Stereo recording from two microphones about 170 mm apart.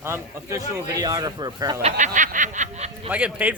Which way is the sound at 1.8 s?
45° right (ahead or behind).